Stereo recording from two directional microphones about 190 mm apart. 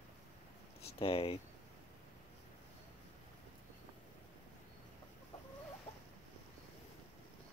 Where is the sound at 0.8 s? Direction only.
30° left (ahead or behind).